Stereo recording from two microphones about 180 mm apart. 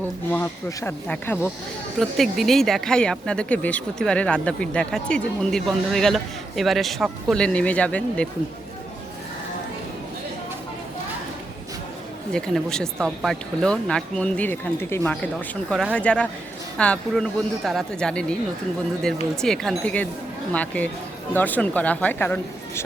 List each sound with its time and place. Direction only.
0.3 s speech: 10° left (ahead or behind)
12.3 s speech: 5° left (ahead or behind)